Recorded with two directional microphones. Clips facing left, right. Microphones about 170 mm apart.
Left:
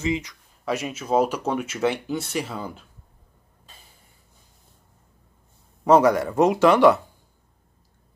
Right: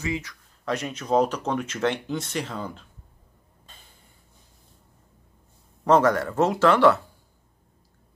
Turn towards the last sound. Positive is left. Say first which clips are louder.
# left 2 dB
turn(degrees=15)  # may be behind; listen again after turning